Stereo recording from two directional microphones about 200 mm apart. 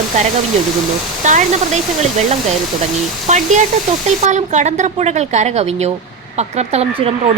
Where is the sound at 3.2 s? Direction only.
35° right (ahead or behind).